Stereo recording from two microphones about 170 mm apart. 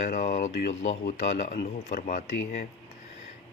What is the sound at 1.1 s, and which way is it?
Speech, 45° left (ahead or behind).